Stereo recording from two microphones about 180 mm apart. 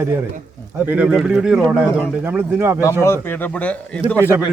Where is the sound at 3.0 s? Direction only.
15° left (ahead or behind).